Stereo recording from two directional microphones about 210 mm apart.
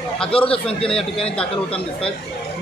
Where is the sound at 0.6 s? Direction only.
5° left (ahead or behind).